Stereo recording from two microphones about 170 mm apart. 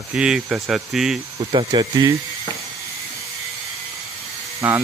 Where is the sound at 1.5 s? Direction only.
25° right (ahead or behind).